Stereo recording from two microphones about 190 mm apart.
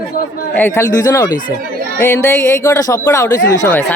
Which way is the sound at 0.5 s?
10° left (ahead or behind).